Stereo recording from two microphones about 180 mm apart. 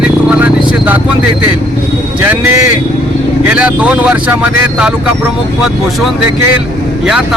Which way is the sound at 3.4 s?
5° right (ahead or behind).